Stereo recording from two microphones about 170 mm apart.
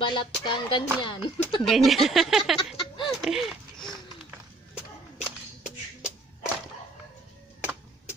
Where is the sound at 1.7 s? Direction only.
Centre (ahead or behind).